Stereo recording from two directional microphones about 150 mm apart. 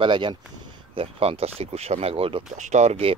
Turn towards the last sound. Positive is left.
turn(degrees=-45)  # may be behind; listen again after turning